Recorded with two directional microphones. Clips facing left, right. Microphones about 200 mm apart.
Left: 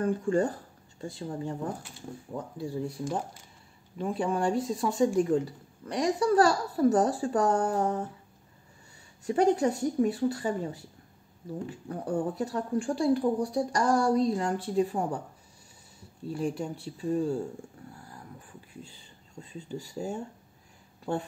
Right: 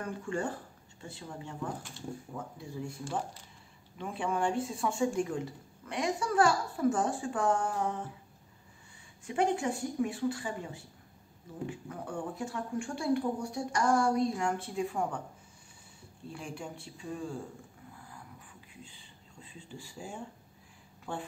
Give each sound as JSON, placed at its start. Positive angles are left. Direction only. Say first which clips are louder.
{"t": 0.0, "sound": "speech", "louder": "left 9 dB", "side_deg": 35}
{"t": 4.0, "sound": "speech", "louder": "left 4 dB", "side_deg": 35}
{"t": 9.2, "sound": "speech", "louder": "left 6 dB", "side_deg": 40}
{"t": 16.3, "sound": "speech", "louder": "left 10 dB", "side_deg": 40}
{"t": 19.4, "sound": "speech", "louder": "left 9 dB", "side_deg": 40}